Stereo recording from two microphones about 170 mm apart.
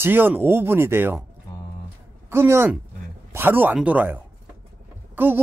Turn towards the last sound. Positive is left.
turn(degrees=-10)  # may be behind; listen again after turning